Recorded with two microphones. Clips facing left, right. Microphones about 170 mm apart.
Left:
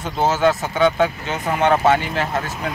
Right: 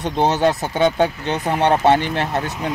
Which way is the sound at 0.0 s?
35° right (ahead or behind).